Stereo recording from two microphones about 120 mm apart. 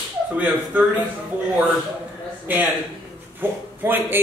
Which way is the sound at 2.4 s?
15° right (ahead or behind).